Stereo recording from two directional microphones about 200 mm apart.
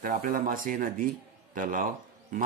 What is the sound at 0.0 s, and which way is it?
A man's voice, 45° right (ahead or behind).